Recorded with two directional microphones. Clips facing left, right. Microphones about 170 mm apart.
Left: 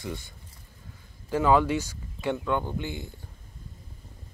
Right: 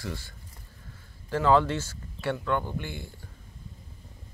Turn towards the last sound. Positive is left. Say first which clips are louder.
# left 3 dB
turn(degrees=20)  # may be behind; listen again after turning